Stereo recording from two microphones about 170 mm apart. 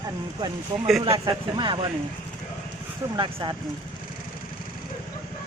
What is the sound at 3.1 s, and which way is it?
Speech, 25° right (ahead or behind).